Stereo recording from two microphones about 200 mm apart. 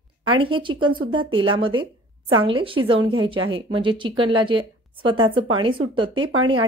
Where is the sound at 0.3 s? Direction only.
25° right (ahead or behind).